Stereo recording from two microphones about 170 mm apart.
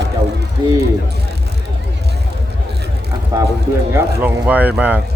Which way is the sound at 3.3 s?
20° right (ahead or behind).